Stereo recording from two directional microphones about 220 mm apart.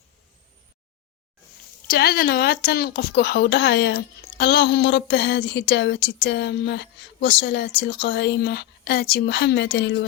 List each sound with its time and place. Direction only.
1.9 s a woman's voice: 45° left (ahead or behind)